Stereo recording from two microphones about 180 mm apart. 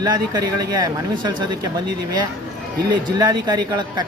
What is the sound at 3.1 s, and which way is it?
Speech, 20° right (ahead or behind).